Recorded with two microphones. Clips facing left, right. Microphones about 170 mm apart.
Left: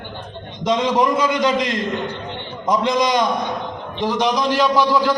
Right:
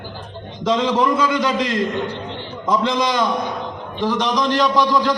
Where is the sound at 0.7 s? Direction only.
15° left (ahead or behind).